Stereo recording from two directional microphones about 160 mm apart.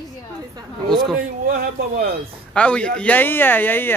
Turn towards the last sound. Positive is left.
turn(degrees=10)  # may be behind; listen again after turning